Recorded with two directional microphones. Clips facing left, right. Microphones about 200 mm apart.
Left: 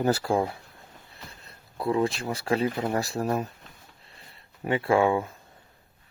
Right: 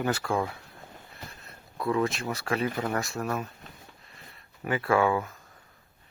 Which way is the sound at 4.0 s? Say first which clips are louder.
Right 1 dB; 30° left (ahead or behind).